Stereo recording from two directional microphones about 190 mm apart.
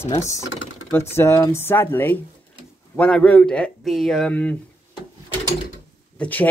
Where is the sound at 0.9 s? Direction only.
10° left (ahead or behind).